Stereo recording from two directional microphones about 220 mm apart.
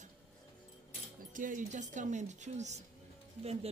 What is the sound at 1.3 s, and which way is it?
Speech, 35° right (ahead or behind).